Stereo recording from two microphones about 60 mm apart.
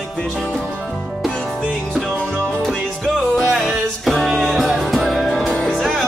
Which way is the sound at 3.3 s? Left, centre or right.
Centre.